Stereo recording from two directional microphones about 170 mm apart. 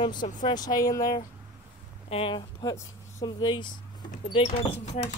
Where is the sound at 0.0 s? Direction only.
25° left (ahead or behind).